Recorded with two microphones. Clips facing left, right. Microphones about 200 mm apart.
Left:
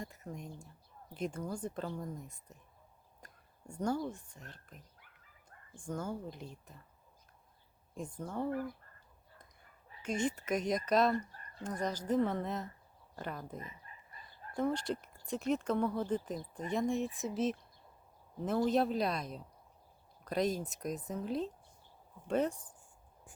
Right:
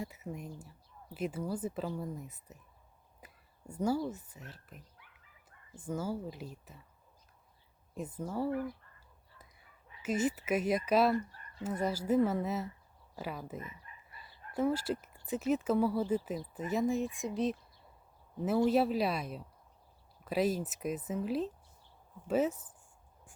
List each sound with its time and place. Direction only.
0.0 s a woman's voice: 5° right (ahead or behind)
7.9 s a woman's voice: 5° right (ahead or behind)
10.0 s a woman's voice: 5° right (ahead or behind)
11.3 s a sound: 45° left (ahead or behind)
11.6 s a woman's voice: 5° right (ahead or behind)
13.6 s chicken: 35° left (ahead or behind)
14.5 s a woman's voice: 5° right (ahead or behind)